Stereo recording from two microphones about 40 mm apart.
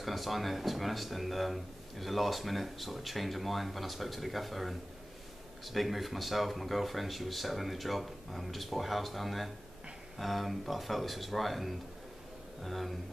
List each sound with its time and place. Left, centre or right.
0.0 s speech: centre